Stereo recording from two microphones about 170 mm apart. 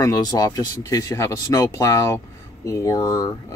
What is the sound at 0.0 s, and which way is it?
Speech, 20° left (ahead or behind).